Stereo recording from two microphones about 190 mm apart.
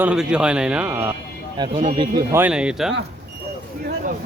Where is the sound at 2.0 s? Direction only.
15° right (ahead or behind).